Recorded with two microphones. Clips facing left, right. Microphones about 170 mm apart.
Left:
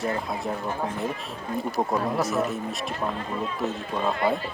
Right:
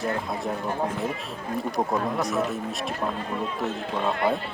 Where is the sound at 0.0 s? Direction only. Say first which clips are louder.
Even; centre (ahead or behind).